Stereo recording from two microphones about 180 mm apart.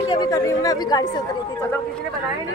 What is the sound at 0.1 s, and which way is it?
A woman's voice, 20° left (ahead or behind).